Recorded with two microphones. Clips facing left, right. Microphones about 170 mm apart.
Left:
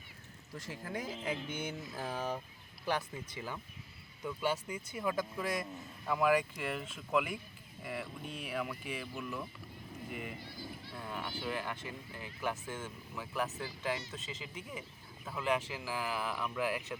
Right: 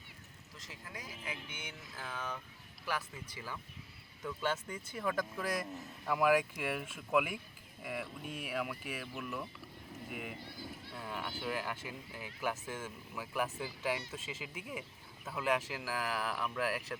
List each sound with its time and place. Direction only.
0.6 s speech: 30° left (ahead or behind)
3.3 s speech: 20° left (ahead or behind)
4.3 s speech: 10° left (ahead or behind)